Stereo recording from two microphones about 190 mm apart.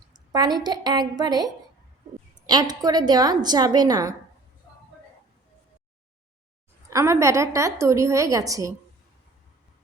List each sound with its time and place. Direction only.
0.1 s a woman's voice: 20° right (ahead or behind)
2.5 s a woman's voice: 20° right (ahead or behind)
6.9 s a woman's voice: 15° right (ahead or behind)